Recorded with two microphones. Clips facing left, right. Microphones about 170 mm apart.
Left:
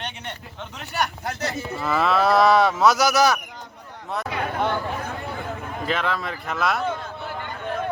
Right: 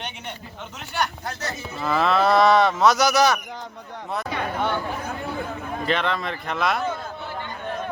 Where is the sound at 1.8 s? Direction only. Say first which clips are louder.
Right 1 dB; centre (ahead or behind).